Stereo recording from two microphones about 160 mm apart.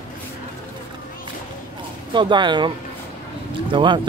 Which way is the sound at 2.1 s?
30° right (ahead or behind).